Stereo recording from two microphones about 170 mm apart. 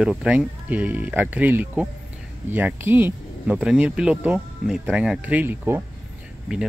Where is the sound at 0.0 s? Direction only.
5° right (ahead or behind).